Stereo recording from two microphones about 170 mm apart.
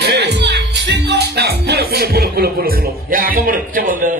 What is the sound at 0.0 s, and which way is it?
A woman's voice, 85° right.